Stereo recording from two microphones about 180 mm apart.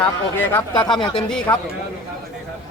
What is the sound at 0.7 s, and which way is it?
Speech, 25° left (ahead or behind).